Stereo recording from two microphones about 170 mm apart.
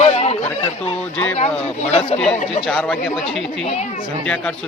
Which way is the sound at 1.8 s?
35° left (ahead or behind).